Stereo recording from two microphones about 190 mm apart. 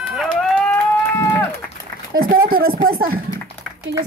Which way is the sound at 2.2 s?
50° right (ahead or behind).